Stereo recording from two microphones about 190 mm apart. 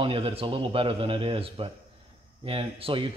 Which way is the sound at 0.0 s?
30° right (ahead or behind).